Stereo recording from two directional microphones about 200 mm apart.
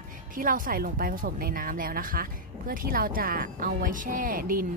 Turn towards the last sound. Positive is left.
turn(degrees=-45)  # may be behind; listen again after turning